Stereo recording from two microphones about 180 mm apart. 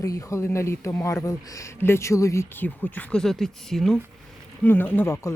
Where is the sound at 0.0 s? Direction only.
20° left (ahead or behind).